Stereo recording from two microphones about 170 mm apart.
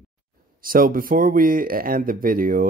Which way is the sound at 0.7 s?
55° right (ahead or behind).